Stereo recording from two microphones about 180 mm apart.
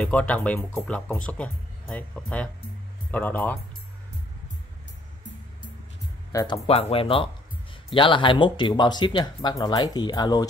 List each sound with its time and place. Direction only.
0.0 s speech: 5° left (ahead or behind)
6.3 s speech: 30° left (ahead or behind)